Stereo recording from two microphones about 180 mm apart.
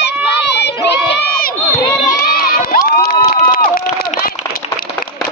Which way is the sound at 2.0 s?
55° left (ahead or behind).